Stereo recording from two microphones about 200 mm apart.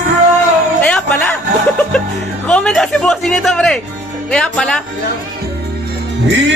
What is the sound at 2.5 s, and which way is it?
Speech, 5° left (ahead or behind).